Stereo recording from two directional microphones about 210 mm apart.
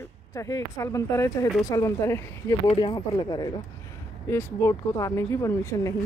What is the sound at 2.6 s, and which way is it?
Speech, 25° left (ahead or behind).